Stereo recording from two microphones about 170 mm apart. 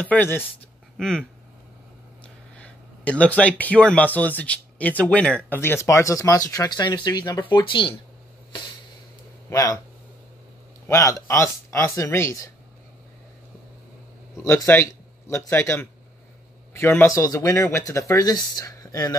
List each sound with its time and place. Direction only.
0.0 s speech: 10° left (ahead or behind)
0.9 s a sound: 5° left (ahead or behind)
2.2 s speech: 10° left (ahead or behind); by 7.9 s 30° left (ahead or behind)
9.5 s speech: 20° left (ahead or behind)
10.9 s speech: 20° left (ahead or behind)
14.3 s speech: 15° left (ahead or behind)